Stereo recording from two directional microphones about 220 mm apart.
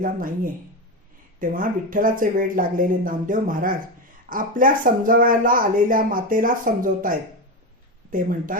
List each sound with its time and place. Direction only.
1.4 s speech: 40° right (ahead or behind)